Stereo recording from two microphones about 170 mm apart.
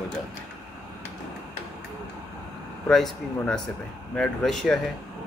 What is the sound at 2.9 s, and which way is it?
Speech, centre (ahead or behind).